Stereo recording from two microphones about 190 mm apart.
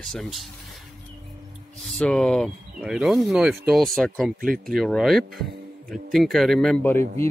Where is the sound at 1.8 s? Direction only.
5° left (ahead or behind).